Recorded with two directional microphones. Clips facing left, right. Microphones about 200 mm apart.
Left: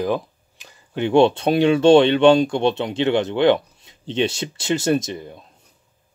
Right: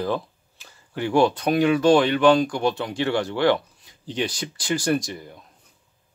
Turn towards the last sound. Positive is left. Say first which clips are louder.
# left 3 dB
turn(degrees=25)  # may be behind; listen again after turning